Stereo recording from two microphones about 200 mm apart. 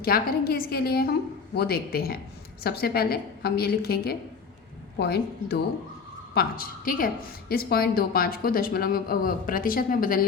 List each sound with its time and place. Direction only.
0.0 s a woman's voice: 50° left (ahead or behind)